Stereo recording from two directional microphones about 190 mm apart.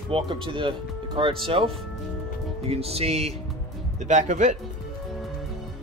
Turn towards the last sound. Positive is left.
turn(degrees=-40)  # may be behind; listen again after turning